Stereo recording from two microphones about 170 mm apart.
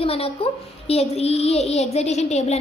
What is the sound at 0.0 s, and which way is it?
A woman's voice, 35° left (ahead or behind).